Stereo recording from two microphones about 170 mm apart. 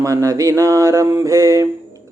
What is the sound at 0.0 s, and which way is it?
Mantra, 20° right (ahead or behind).